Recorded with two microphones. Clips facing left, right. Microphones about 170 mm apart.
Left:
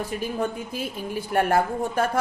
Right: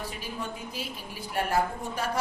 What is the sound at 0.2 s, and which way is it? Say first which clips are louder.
A woman's voice: left 9 dB; 50° left (ahead or behind).